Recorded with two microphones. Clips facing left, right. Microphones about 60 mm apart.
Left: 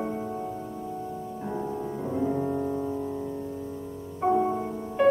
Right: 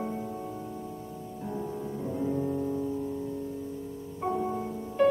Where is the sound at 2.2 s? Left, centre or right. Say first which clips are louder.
Left 2 dB; left.